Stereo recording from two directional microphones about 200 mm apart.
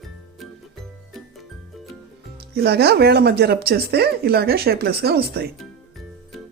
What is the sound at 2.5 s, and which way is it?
Speech, 55° right (ahead or behind).